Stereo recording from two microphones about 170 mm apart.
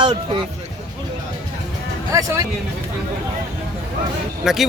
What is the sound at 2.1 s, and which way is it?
Speech, 20° right (ahead or behind).